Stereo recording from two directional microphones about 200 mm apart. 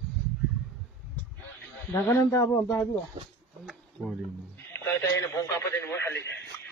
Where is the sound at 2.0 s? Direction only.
15° left (ahead or behind).